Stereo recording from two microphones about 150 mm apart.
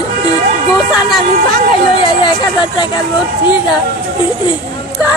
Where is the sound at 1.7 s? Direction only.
35° left (ahead or behind).